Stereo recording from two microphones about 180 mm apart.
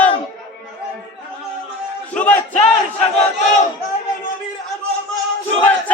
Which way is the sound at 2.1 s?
10° left (ahead or behind).